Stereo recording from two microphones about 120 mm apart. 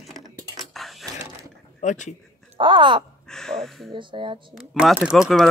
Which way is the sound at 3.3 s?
5° left (ahead or behind).